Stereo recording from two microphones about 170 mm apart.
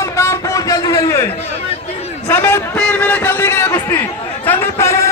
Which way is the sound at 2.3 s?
15° left (ahead or behind).